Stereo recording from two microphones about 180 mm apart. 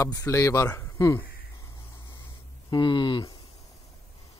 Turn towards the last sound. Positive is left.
turn(degrees=25)  # may be behind; listen again after turning